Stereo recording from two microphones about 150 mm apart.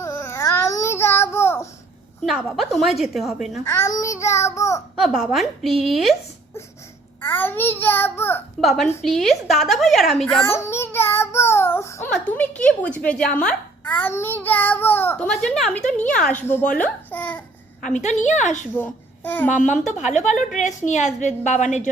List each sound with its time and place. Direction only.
0.0 s child singing: 20° left (ahead or behind)
2.2 s a woman's voice: centre (ahead or behind)
3.6 s a child's voice: 15° left (ahead or behind)
4.9 s a woman's voice: centre (ahead or behind)
7.3 s speech: 15° left (ahead or behind)
8.6 s a woman's voice: centre (ahead or behind)
10.4 s child singing: 15° left (ahead or behind)
12.1 s speech: 10° left (ahead or behind)
15.3 s a woman's voice: centre (ahead or behind)
17.8 s a woman's voice: 50° left (ahead or behind)
18.8 s a child's voice: 15° left (ahead or behind)
20.0 s a woman's voice: 50° left (ahead or behind)